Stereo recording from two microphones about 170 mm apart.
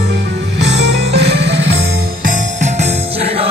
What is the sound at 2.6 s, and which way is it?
Music, 40° right (ahead or behind).